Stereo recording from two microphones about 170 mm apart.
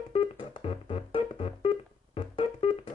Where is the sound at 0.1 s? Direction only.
35° left (ahead or behind).